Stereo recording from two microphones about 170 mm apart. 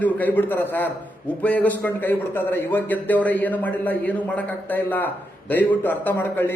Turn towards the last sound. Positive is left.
turn(degrees=10)  # may be behind; listen again after turning